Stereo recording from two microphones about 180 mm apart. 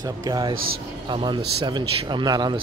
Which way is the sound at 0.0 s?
20° right (ahead or behind).